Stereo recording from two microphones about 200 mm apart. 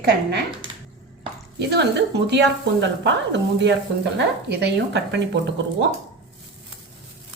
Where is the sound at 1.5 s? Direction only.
55° right (ahead or behind).